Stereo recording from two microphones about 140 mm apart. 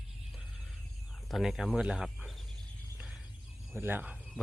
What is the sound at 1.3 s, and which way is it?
Speech, centre (ahead or behind).